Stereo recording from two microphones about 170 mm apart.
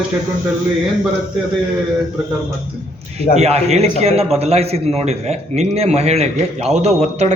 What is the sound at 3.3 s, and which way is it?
A man's voice, 40° right (ahead or behind).